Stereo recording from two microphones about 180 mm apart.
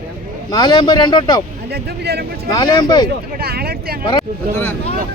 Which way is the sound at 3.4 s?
60° right (ahead or behind).